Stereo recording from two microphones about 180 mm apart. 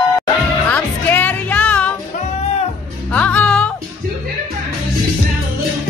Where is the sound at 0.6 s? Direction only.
10° left (ahead or behind).